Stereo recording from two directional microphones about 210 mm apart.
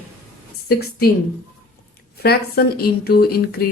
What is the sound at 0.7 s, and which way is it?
Speech, 45° left (ahead or behind).